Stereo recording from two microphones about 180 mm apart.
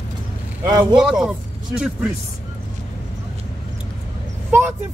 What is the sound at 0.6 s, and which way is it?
Speech, 25° right (ahead or behind).